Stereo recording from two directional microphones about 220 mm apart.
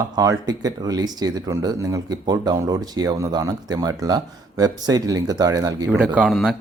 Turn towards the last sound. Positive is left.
turn(degrees=0)  # may be behind; listen again after turning